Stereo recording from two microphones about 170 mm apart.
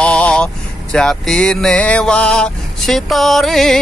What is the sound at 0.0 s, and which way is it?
Vehicle, 5° left (ahead or behind).